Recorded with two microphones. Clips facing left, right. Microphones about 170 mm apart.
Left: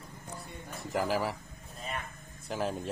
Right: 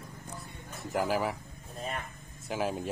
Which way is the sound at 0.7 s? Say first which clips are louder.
Right 1 dB; centre (ahead or behind).